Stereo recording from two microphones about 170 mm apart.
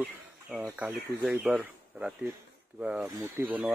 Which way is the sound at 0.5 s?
10° right (ahead or behind).